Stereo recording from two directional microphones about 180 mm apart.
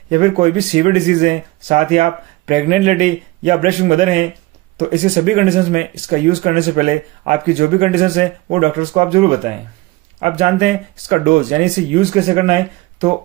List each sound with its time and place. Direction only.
0.1 s speech: 35° right (ahead or behind)